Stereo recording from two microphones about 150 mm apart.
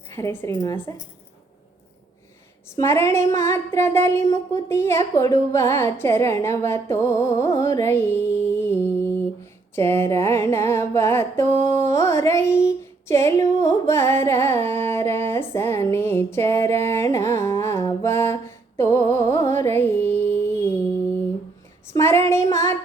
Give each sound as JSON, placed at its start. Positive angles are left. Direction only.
{"t": 0.1, "sound": "a woman's voice", "side_deg": 20}
{"t": 2.6, "sound": "a sound", "side_deg": 15}
{"t": 19.8, "sound": "music", "side_deg": 15}
{"t": 21.8, "sound": "child singing", "side_deg": 20}